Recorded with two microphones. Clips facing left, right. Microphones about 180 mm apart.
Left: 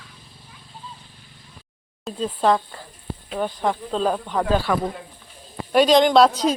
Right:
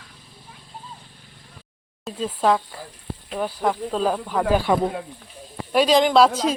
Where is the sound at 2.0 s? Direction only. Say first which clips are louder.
Left 1 dB; 5° right (ahead or behind).